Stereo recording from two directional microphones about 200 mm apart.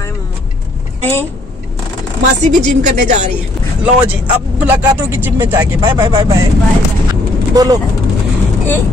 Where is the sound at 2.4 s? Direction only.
35° right (ahead or behind).